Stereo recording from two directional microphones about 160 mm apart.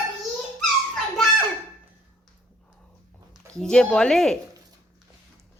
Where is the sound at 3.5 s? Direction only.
5° left (ahead or behind).